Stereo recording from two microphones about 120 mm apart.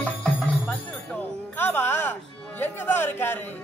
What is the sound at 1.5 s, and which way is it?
Music, 20° left (ahead or behind).